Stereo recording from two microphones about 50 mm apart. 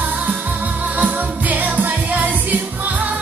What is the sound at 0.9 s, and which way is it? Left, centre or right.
Music, right.